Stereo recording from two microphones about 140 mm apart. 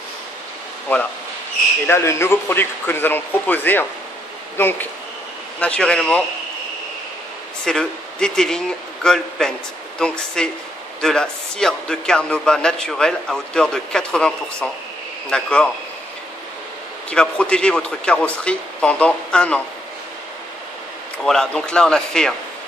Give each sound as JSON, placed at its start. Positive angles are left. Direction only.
{"t": 1.9, "sound": "speech", "side_deg": 20}
{"t": 7.6, "sound": "a man's voice", "side_deg": 5}
{"t": 17.1, "sound": "speech", "side_deg": 5}
{"t": 21.2, "sound": "a man's voice", "side_deg": 5}